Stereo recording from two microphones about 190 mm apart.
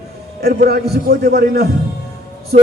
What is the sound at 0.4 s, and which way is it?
A man's voice, 55° right (ahead or behind).